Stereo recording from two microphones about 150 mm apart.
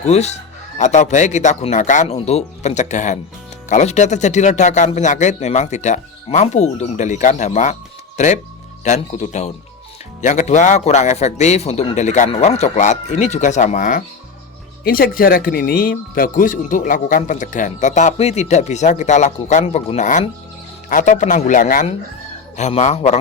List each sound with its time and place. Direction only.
0.0 s speech: 45° left (ahead or behind); by 14.0 s 60° left (ahead or behind)
14.8 s speech: 75° left (ahead or behind)
22.5 s speech: 50° left (ahead or behind)